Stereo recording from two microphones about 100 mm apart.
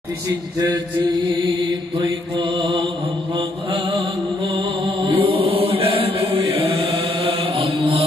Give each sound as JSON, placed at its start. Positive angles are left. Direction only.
{"t": 2.0, "sound": "mantra", "side_deg": -50}
{"t": 4.6, "sound": "chant", "side_deg": -60}